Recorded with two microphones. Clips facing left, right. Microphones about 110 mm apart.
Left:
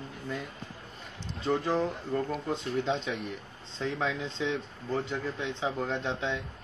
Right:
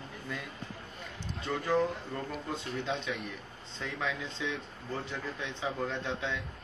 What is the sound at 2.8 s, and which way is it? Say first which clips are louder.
Speech: left 4 dB; 30° left (ahead or behind).